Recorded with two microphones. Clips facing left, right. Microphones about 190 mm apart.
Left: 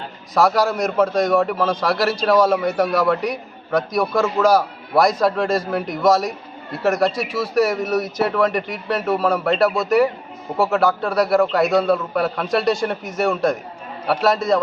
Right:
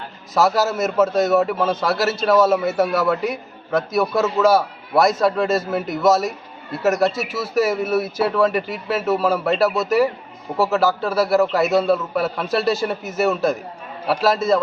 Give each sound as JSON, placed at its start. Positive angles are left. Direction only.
{"t": 0.3, "sound": "a man's voice", "side_deg": 0}